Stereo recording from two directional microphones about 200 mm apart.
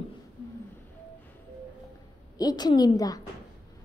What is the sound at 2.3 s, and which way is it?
Speech, 20° left (ahead or behind).